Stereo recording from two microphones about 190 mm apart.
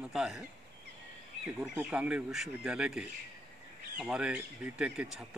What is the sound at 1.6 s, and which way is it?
Speech, 5° right (ahead or behind).